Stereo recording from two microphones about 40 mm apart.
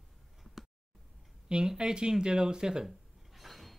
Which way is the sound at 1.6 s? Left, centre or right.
Centre.